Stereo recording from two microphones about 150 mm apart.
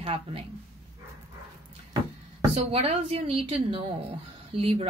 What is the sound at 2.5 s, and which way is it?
Speech, 40° right (ahead or behind).